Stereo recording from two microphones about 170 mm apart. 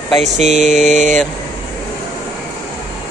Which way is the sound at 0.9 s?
50° right (ahead or behind).